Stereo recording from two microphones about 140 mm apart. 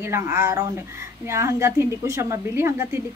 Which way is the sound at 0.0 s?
20° right (ahead or behind).